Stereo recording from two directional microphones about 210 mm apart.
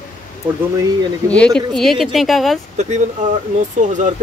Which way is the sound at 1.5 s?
Centre (ahead or behind).